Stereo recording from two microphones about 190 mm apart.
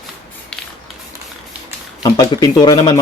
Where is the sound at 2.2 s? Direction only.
20° left (ahead or behind).